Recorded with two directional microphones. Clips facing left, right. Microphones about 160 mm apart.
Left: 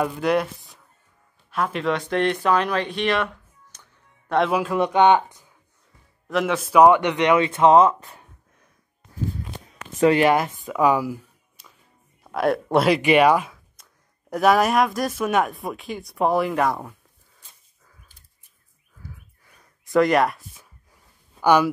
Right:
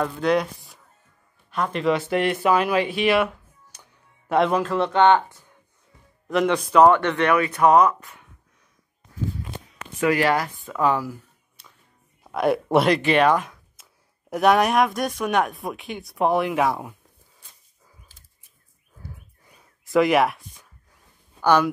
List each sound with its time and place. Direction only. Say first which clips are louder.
0.0 s speech: even; 5° left (ahead or behind)
4.4 s speech: even; 5° left (ahead or behind)
6.2 s speech: right 2 dB; centre (ahead or behind); by 8.3 s 30° left (ahead or behind)
10.0 s speech: left 4 dB; 20° left (ahead or behind)
10.7 s a sound: left 3 dB; 10° left (ahead or behind)
12.2 s speech: even; centre (ahead or behind)
12.9 s speech: left 2 dB; 10° left (ahead or behind)
13.8 s a sound: even; 5° right (ahead or behind)
14.3 s speech: even; centre (ahead or behind)
19.4 s a sound: right 2 dB; 10° right (ahead or behind)
19.9 s speech: even; centre (ahead or behind)